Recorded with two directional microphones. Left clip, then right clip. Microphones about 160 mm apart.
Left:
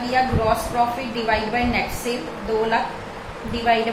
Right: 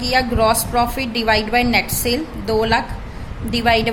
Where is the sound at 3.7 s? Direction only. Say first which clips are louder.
Right 3 dB; 90° right.